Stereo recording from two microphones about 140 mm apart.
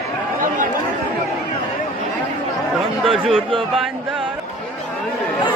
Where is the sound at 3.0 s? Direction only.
Centre (ahead or behind).